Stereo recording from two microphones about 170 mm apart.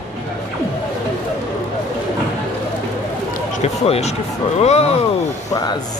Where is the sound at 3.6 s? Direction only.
40° left (ahead or behind).